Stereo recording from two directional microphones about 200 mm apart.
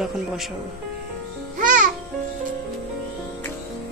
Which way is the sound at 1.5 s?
40° right (ahead or behind).